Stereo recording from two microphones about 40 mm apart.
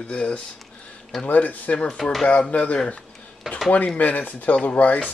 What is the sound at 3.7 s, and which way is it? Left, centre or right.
Chopping, left.